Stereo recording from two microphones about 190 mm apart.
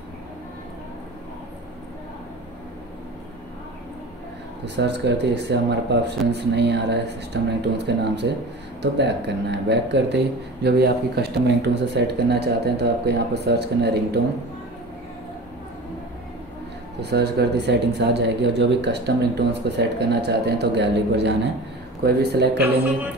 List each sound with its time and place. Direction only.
4.6 s a man's voice: 65° right (ahead or behind)
17.0 s a man's voice: 60° right (ahead or behind)